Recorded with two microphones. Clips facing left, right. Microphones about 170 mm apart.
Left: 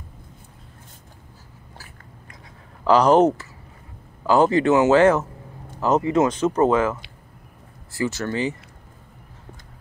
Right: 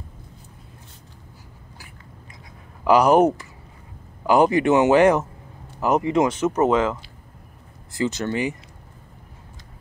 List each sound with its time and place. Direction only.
2.8 s speech: 10° right (ahead or behind)